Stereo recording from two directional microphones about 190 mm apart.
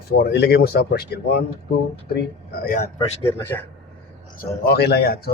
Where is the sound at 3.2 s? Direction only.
10° left (ahead or behind).